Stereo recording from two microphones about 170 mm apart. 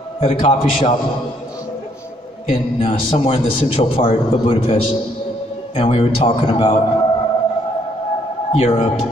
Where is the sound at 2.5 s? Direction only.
30° left (ahead or behind).